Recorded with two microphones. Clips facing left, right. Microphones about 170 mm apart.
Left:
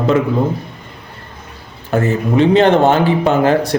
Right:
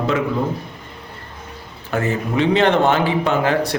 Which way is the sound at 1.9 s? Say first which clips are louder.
Left 5 dB; 40° left (ahead or behind).